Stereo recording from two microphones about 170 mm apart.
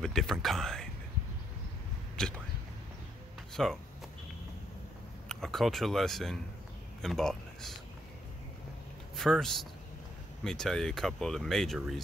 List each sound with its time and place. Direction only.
0.0 s speech: 5° left (ahead or behind)
2.1 s speech: 5° left (ahead or behind)
3.6 s speech: centre (ahead or behind)
5.3 s speech: centre (ahead or behind)
9.1 s speech: centre (ahead or behind)